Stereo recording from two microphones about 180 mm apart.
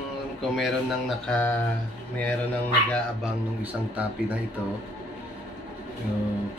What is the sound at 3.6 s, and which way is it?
Speech, 10° right (ahead or behind).